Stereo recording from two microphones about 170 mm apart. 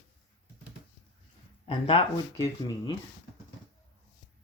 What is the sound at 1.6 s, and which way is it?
Speech, 30° left (ahead or behind).